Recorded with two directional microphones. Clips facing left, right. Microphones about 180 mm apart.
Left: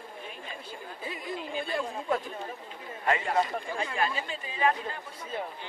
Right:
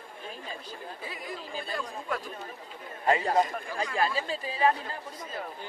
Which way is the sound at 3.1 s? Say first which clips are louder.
Right 2 dB; 35° right (ahead or behind).